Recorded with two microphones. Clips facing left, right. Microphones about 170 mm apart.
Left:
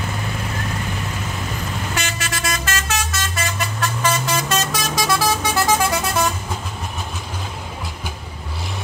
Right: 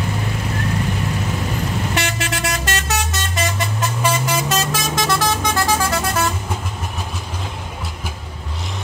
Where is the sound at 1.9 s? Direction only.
65° right (ahead or behind).